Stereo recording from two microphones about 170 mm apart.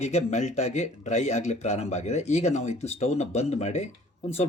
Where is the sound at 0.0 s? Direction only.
40° left (ahead or behind).